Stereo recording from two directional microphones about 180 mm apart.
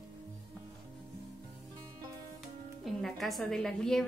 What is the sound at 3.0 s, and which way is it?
A woman's voice, centre (ahead or behind).